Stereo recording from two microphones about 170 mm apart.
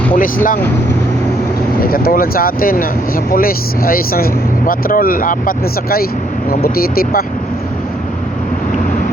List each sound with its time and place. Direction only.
0.2 s speech: 50° left (ahead or behind)
1.8 s speech: 60° left (ahead or behind)